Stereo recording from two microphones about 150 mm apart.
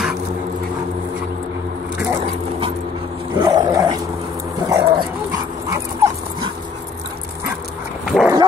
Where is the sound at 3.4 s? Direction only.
25° right (ahead or behind).